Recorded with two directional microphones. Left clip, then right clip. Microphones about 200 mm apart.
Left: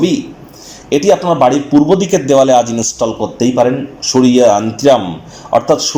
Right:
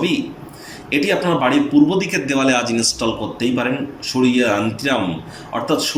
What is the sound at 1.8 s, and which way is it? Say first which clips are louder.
Speech: left 7 dB; 35° left (ahead or behind).